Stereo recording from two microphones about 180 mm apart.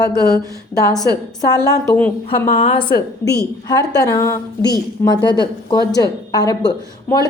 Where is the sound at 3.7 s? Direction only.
20° left (ahead or behind).